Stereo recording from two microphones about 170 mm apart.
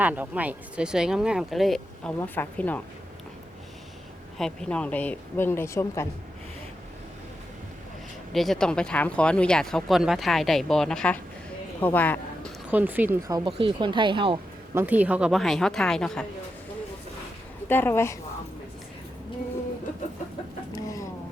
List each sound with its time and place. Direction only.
0.0 s speech: 10° right (ahead or behind)
2.1 s speech: 10° left (ahead or behind)
4.4 s speech: 5° left (ahead or behind)
8.3 s a man's voice: centre (ahead or behind)
12.7 s speech: 10° right (ahead or behind)
13.6 s speech: 30° right (ahead or behind)
14.8 s speech: 10° right (ahead or behind)
17.7 s speech: 10° left (ahead or behind)
20.7 s a sound: 20° left (ahead or behind)